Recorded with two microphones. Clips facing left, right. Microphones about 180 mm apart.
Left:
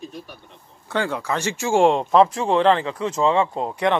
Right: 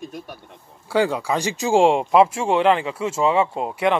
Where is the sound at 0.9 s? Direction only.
15° right (ahead or behind).